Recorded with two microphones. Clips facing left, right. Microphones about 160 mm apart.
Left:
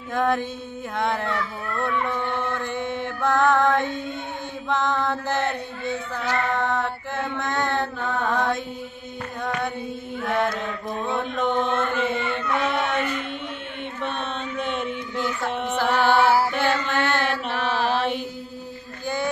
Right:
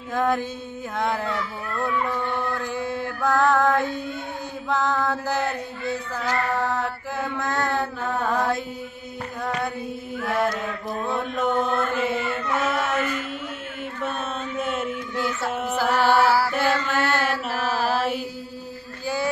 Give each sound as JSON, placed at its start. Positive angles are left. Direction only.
{"t": 0.1, "sound": "mantra", "side_deg": 0}
{"t": 2.0, "sound": "a sound", "side_deg": 20}
{"t": 2.6, "sound": "mantra", "side_deg": -5}
{"t": 11.0, "sound": "chant", "side_deg": -5}
{"t": 14.6, "sound": "mantra", "side_deg": -5}